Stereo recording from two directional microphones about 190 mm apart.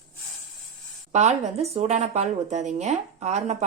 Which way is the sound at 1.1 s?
35° right (ahead or behind).